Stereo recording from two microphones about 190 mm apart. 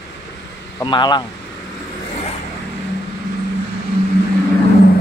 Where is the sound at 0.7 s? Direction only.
25° left (ahead or behind).